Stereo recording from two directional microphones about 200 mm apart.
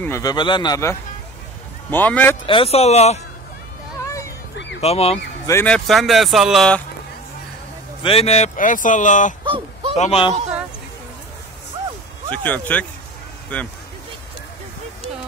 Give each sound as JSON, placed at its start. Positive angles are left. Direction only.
{"t": 0.0, "sound": "a man's voice", "side_deg": 15}
{"t": 2.4, "sound": "speech", "side_deg": 25}
{"t": 4.0, "sound": "a sound", "side_deg": 15}
{"t": 4.7, "sound": "speech", "side_deg": 30}
{"t": 5.5, "sound": "speech", "side_deg": 10}
{"t": 5.9, "sound": "speech", "side_deg": 0}
{"t": 8.0, "sound": "speech", "side_deg": 30}
{"t": 9.4, "sound": "a sound", "side_deg": -25}
{"t": 9.9, "sound": "speech", "side_deg": 30}
{"t": 12.3, "sound": "speech", "side_deg": 10}